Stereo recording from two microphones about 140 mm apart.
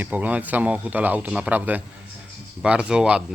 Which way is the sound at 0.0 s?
10° right (ahead or behind).